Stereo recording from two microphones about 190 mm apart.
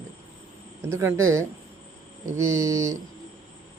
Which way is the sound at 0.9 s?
15° right (ahead or behind).